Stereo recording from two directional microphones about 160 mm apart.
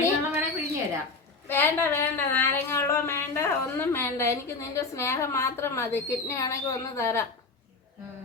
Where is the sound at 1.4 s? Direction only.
15° left (ahead or behind).